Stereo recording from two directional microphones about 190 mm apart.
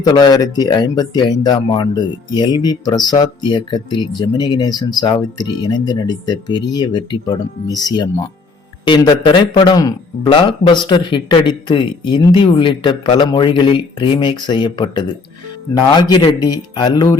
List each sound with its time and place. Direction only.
0.0 s speech: 20° left (ahead or behind)